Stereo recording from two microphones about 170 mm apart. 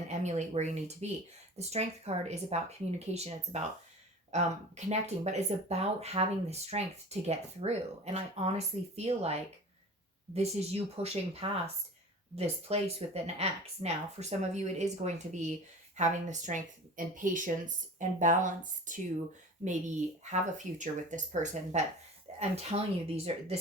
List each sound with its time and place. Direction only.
0.1 s speech: 45° right (ahead or behind)
20.2 s speech: 45° right (ahead or behind)